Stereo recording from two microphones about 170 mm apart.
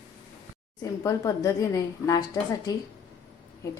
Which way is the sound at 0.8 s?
20° left (ahead or behind).